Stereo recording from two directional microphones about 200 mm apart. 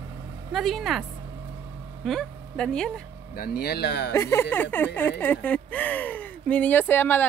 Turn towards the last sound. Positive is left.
turn(degrees=10)  # may be behind; listen again after turning